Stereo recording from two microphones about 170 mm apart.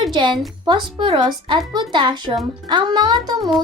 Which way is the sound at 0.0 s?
25° right (ahead or behind).